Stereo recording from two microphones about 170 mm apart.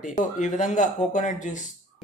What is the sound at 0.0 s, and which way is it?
Speech, 45° left (ahead or behind).